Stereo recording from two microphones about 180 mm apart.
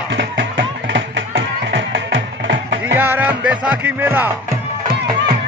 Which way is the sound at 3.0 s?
10° right (ahead or behind).